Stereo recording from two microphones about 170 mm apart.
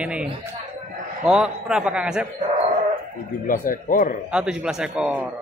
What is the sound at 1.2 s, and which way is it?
A man's voice, 5° right (ahead or behind).